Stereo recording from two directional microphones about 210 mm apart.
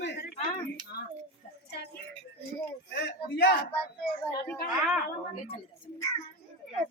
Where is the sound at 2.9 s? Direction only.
55° left (ahead or behind).